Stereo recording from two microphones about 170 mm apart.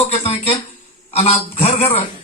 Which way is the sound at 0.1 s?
35° left (ahead or behind).